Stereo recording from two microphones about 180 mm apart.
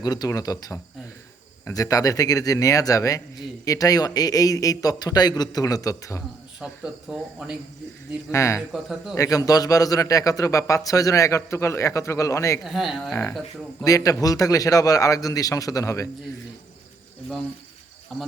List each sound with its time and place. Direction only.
0.0 s a man's voice: 20° left (ahead or behind)
6.6 s speech: 5° right (ahead or behind)
8.3 s a man's voice: 15° left (ahead or behind)
8.7 s speech: centre (ahead or behind)
9.1 s a man's voice: 20° left (ahead or behind)
12.6 s speech: centre (ahead or behind)
13.8 s a man's voice: 20° left (ahead or behind)
18.1 s speech: centre (ahead or behind)